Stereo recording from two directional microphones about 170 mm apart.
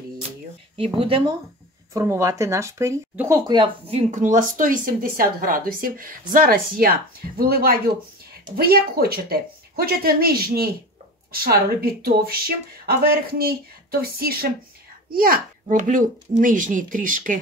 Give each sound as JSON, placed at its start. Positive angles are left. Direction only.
{"t": 0.7, "sound": "speech", "side_deg": -35}
{"t": 2.0, "sound": "speech", "side_deg": -15}